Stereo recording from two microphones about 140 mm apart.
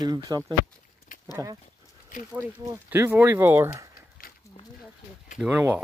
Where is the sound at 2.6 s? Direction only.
15° right (ahead or behind).